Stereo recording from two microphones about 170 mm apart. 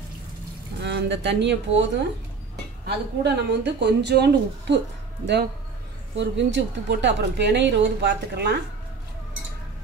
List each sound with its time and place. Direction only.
0.8 s a woman's voice: 90° right
3.3 s a woman's voice: 80° right